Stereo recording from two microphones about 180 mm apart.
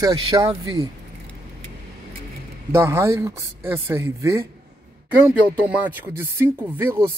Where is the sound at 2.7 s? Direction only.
15° right (ahead or behind).